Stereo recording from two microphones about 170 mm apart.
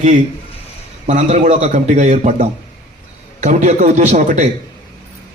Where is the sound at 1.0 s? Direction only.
40° right (ahead or behind).